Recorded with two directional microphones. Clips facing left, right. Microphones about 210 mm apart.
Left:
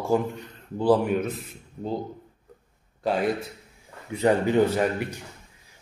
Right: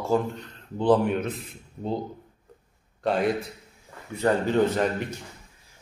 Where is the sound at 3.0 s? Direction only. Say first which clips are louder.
Even; centre (ahead or behind).